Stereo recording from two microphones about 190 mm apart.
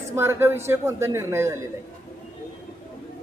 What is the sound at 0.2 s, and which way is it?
Speech, 15° right (ahead or behind).